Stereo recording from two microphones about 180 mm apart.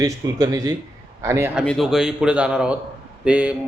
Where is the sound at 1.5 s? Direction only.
Centre (ahead or behind).